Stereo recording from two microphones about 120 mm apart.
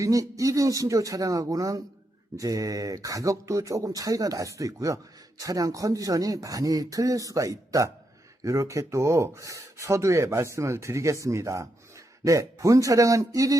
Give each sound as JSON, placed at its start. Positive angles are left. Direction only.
{"t": 0.0, "sound": "speech", "side_deg": -30}